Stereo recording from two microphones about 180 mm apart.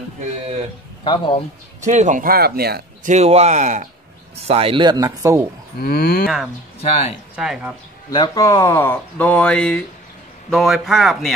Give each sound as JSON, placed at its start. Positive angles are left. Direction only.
{"t": 1.0, "sound": "speech", "side_deg": 25}
{"t": 1.9, "sound": "speech", "side_deg": -40}
{"t": 3.1, "sound": "speech", "side_deg": -35}
{"t": 4.5, "sound": "speech", "side_deg": -30}
{"t": 5.8, "sound": "speech", "side_deg": 55}
{"t": 6.2, "sound": "speech", "side_deg": -5}
{"t": 6.8, "sound": "speech", "side_deg": 35}
{"t": 7.3, "sound": "speech", "side_deg": -5}
{"t": 8.1, "sound": "speech", "side_deg": 20}